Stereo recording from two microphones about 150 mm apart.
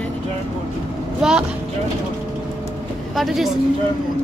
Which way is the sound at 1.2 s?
5° right (ahead or behind).